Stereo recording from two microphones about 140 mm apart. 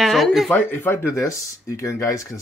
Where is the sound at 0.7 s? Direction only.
15° left (ahead or behind).